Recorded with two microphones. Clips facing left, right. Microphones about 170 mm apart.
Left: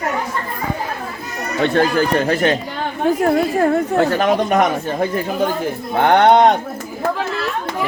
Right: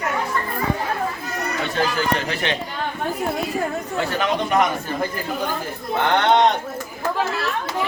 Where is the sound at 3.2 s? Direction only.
85° left; by 4.7 s 50° left (ahead or behind).